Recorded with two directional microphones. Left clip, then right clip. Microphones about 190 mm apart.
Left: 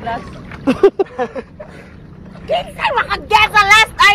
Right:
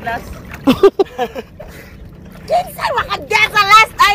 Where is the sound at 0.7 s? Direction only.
45° right (ahead or behind).